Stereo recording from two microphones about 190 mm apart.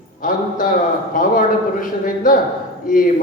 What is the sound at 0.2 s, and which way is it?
A man's voice, 45° left (ahead or behind).